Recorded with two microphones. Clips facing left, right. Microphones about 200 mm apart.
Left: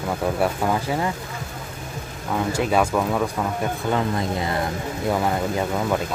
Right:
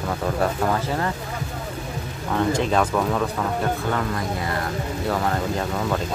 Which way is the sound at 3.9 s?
20° left (ahead or behind).